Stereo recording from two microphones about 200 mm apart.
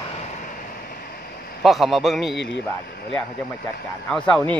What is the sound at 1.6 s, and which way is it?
Speech, centre (ahead or behind).